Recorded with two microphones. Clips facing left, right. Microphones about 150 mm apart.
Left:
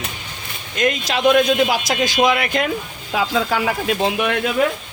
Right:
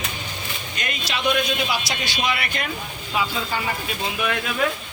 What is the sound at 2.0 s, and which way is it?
Speech, 90° left.